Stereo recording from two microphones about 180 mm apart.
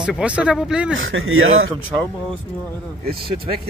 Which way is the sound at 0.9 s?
90° right.